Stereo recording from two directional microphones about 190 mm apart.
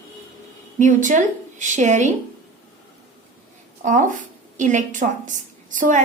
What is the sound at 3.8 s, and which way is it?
A woman's voice, 40° right (ahead or behind).